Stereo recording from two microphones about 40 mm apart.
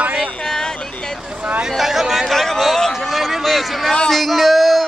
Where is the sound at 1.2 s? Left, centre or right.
Right.